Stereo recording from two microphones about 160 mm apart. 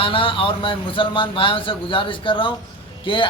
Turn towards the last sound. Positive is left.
turn(degrees=30)  # may be behind; listen again after turning